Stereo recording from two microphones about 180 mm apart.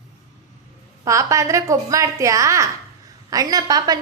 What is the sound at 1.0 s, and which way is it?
A woman's voice, 15° right (ahead or behind).